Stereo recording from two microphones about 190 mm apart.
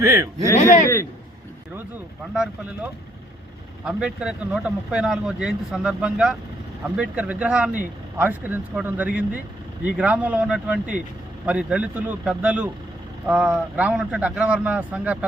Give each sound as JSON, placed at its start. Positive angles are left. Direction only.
{"t": 0.0, "sound": "speech", "side_deg": -15}
{"t": 0.5, "sound": "speech", "side_deg": 45}
{"t": 2.3, "sound": "speech", "side_deg": -5}